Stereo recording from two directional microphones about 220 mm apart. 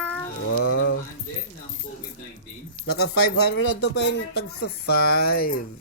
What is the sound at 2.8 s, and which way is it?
Speech, 50° left (ahead or behind).